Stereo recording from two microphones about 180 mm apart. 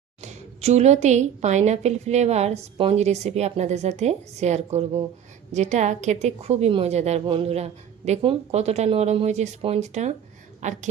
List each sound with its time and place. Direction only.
0.2 s a woman's voice: 40° right (ahead or behind)